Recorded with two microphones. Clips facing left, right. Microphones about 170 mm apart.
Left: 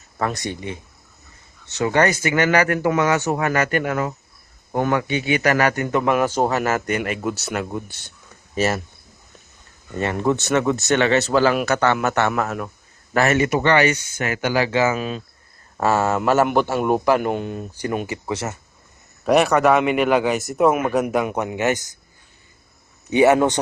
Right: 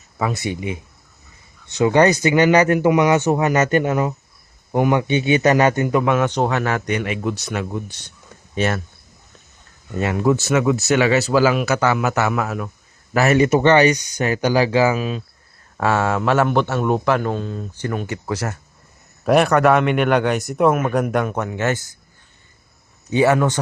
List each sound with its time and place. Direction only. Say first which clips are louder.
0.2 s speech: right 2 dB; 5° right (ahead or behind)
6.0 s speech: left 3 dB; 5° left (ahead or behind)
9.9 s speech: right 2 dB; 5° right (ahead or behind)
13.1 s a man's voice: right 3 dB; 10° right (ahead or behind); by 21.2 s 5° left (ahead or behind)
21.2 s a man's voice: left 1 dB; 15° left (ahead or behind)
23.0 s a man's voice: left 1 dB; 20° left (ahead or behind)